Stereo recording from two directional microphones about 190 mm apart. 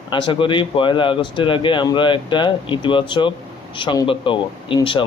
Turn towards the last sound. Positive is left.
turn(degrees=25)  # may be behind; listen again after turning